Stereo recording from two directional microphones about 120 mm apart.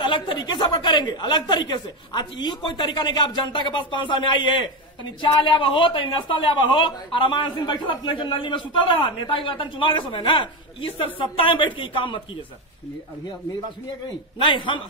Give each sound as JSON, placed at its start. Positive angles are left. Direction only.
{"t": 0.0, "sound": "a man's voice", "side_deg": 40}
{"t": 14.4, "sound": "a man's voice", "side_deg": 40}